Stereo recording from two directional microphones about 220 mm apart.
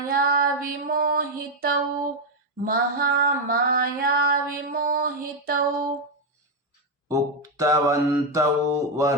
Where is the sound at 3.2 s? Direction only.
40° right (ahead or behind).